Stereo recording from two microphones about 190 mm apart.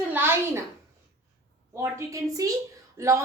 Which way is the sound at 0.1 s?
10° right (ahead or behind).